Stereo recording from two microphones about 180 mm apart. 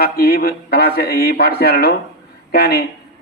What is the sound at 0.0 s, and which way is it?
A man's voice, 55° left (ahead or behind).